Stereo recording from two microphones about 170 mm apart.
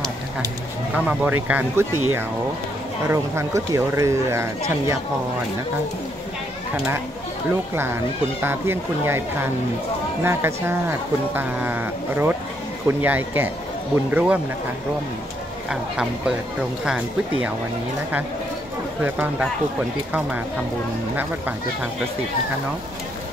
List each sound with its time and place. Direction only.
0.9 s speech: 10° right (ahead or behind)
7.7 s speech: 15° right (ahead or behind)
15.7 s speech: 5° right (ahead or behind)
20.1 s speech: 10° right (ahead or behind)